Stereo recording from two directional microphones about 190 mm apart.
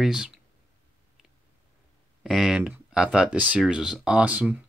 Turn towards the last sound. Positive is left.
turn(degrees=-5)  # may be behind; listen again after turning